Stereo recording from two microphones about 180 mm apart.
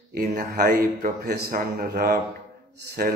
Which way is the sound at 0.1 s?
50° right (ahead or behind).